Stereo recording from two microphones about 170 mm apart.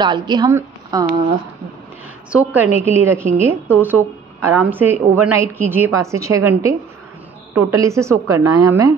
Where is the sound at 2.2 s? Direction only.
10° right (ahead or behind).